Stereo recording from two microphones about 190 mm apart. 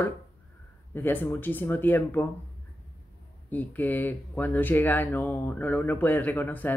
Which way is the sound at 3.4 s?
10° left (ahead or behind).